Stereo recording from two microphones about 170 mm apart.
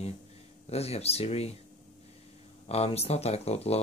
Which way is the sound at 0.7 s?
35° left (ahead or behind).